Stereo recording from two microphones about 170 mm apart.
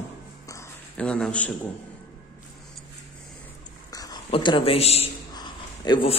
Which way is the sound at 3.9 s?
20° left (ahead or behind).